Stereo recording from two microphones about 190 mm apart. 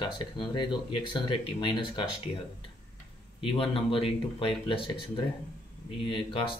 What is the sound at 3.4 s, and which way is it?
Speech, 30° left (ahead or behind).